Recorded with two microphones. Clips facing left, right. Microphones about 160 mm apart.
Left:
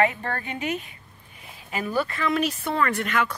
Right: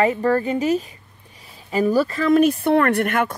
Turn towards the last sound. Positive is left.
turn(degrees=-55)  # may be behind; listen again after turning